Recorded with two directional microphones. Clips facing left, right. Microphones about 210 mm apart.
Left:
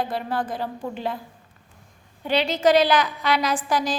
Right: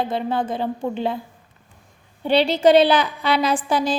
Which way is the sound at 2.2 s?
30° right (ahead or behind).